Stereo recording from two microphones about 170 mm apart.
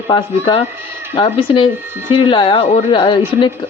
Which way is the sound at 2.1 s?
30° left (ahead or behind).